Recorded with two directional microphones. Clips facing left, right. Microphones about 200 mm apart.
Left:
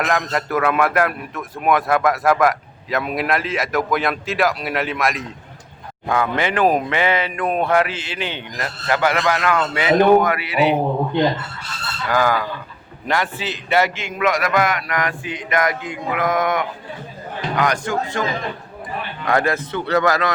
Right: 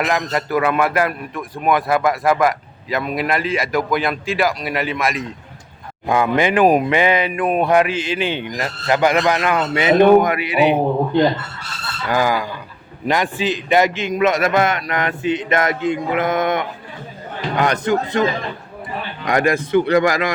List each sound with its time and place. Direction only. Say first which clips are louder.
0.0 s speech: right 1 dB; 5° right (ahead or behind)
6.1 s speech: right 4 dB; 15° right (ahead or behind)
12.0 s a man's voice: even; 15° right (ahead or behind)